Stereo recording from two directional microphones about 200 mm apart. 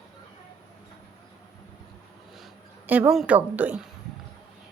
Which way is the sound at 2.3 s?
5° right (ahead or behind).